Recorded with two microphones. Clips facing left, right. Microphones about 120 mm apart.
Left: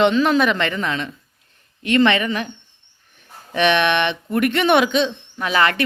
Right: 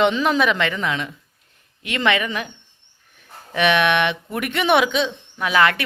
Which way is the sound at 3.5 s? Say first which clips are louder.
Left 1 dB; 5° right (ahead or behind).